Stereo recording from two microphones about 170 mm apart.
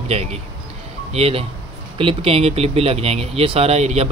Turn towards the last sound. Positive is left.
turn(degrees=-40)  # may be behind; listen again after turning